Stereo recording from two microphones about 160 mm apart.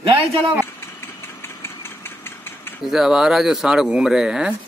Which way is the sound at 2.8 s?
5° right (ahead or behind).